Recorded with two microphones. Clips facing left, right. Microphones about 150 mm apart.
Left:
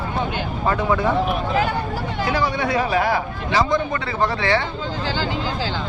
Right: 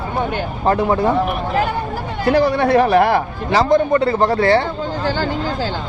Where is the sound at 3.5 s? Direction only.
35° right (ahead or behind).